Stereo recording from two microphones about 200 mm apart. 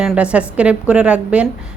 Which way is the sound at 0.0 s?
5° right (ahead or behind).